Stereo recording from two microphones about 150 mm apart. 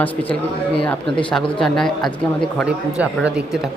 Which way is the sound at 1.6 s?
5° left (ahead or behind).